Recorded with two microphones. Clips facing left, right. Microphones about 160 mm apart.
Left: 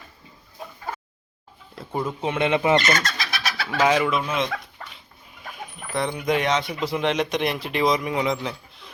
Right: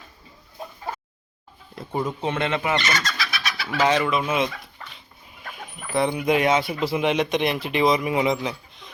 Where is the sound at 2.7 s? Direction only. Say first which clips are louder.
Left 4 dB; 50° left (ahead or behind).